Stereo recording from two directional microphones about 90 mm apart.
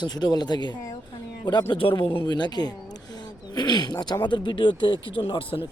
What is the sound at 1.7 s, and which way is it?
Speech, 70° left (ahead or behind).